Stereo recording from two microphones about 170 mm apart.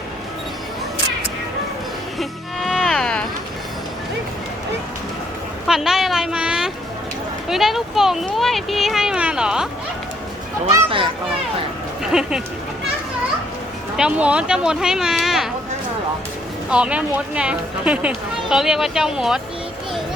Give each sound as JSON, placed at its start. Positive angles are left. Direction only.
{"t": 2.1, "sound": "music", "side_deg": 0}
{"t": 5.6, "sound": "a sound", "side_deg": -5}
{"t": 7.4, "sound": "speech", "side_deg": 0}
{"t": 10.8, "sound": "speech", "side_deg": -30}
{"t": 12.1, "sound": "speech", "side_deg": -5}
{"t": 13.9, "sound": "speech", "side_deg": -5}
{"t": 16.6, "sound": "speech", "side_deg": -5}